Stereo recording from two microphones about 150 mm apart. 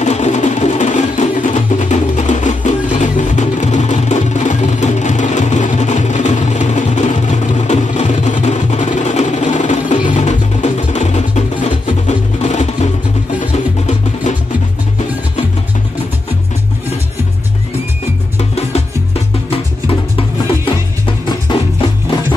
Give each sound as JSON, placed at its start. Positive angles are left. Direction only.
{"t": 0.0, "sound": "music", "side_deg": 50}
{"t": 18.4, "sound": "music", "side_deg": 45}